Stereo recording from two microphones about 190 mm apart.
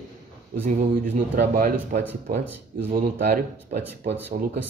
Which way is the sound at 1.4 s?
55° right (ahead or behind).